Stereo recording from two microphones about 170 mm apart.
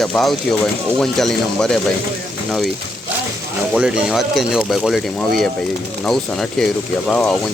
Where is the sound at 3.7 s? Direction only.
5° right (ahead or behind).